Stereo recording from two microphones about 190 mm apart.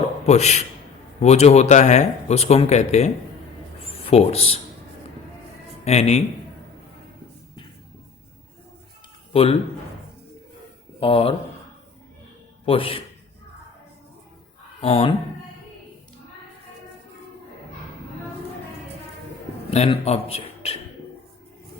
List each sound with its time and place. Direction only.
0.3 s speech: 35° left (ahead or behind)
5.8 s speech: 35° left (ahead or behind)
9.3 s a man's voice: 30° left (ahead or behind)
11.0 s speech: 30° left (ahead or behind)
12.6 s speech: 30° left (ahead or behind)
14.8 s speech: 30° left (ahead or behind)
19.7 s a man's voice: 35° left (ahead or behind)